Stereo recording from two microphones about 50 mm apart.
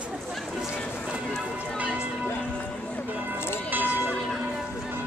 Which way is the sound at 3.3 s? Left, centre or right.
Left.